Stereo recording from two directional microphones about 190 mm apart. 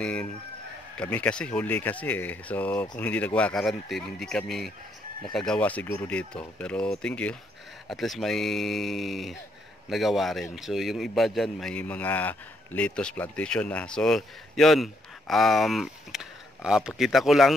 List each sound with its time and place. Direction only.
0.0 s a man's voice: 5° left (ahead or behind)